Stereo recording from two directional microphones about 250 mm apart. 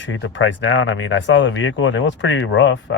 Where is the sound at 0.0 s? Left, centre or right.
Left.